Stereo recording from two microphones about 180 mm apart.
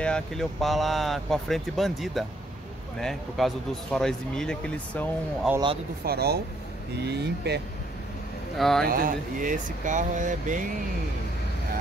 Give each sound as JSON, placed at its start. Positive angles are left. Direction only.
{"t": 0.0, "sound": "speech", "side_deg": 5}
{"t": 5.5, "sound": "speech", "side_deg": -5}
{"t": 6.0, "sound": "speech", "side_deg": -60}
{"t": 8.5, "sound": "speech", "side_deg": 0}
{"t": 8.8, "sound": "speech", "side_deg": -50}